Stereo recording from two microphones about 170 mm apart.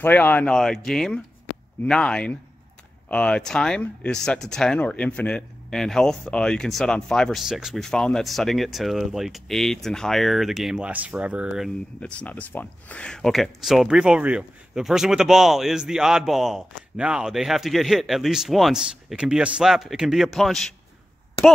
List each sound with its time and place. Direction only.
0.0 s speech: 10° left (ahead or behind)